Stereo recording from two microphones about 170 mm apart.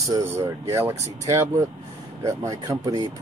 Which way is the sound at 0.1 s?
15° right (ahead or behind).